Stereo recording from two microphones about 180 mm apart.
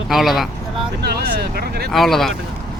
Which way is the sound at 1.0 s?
60° right (ahead or behind).